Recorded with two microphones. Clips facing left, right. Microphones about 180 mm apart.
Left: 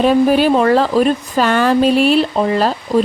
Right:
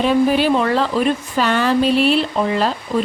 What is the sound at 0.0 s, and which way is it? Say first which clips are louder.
Speech: left 3 dB; 45° left (ahead or behind).